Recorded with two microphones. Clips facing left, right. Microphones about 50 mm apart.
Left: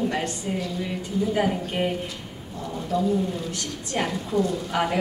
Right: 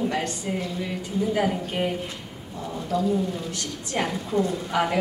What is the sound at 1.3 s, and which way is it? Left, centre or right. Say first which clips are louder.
Speech: even; centre.